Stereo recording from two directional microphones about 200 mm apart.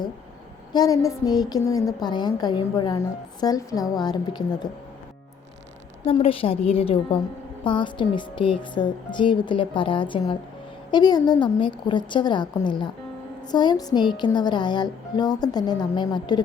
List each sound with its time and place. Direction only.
0.7 s a woman's voice: 20° left (ahead or behind)
6.1 s a woman's voice: 30° left (ahead or behind)